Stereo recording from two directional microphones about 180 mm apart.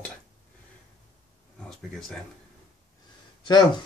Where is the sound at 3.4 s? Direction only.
25° left (ahead or behind).